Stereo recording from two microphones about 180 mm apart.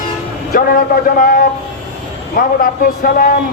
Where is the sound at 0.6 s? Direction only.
55° left (ahead or behind).